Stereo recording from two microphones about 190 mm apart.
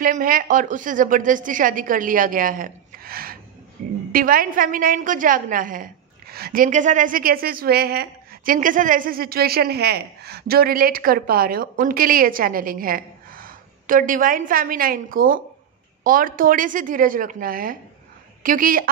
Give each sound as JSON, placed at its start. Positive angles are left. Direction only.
{"t": 0.0, "sound": "a woman's voice", "side_deg": -50}